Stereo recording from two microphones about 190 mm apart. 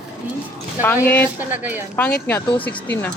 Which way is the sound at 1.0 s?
10° left (ahead or behind).